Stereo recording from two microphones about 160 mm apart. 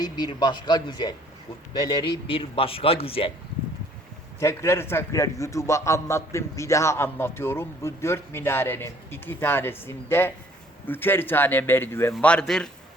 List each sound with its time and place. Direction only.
0.0 s speech: 25° left (ahead or behind)
4.4 s a man's voice: 15° left (ahead or behind)